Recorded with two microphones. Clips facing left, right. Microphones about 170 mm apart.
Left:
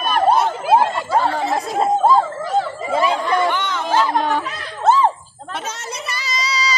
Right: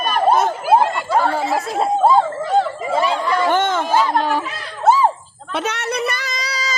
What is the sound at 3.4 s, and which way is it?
Chatter, 50° right (ahead or behind).